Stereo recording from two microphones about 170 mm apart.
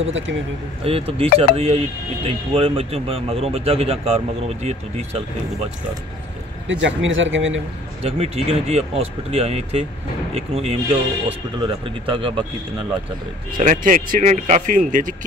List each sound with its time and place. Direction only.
0.0 s speech: 90° right
0.8 s speech: 35° right (ahead or behind)
6.7 s speech: 90° right
8.0 s speech: 35° right (ahead or behind)
13.6 s speech: 50° right (ahead or behind)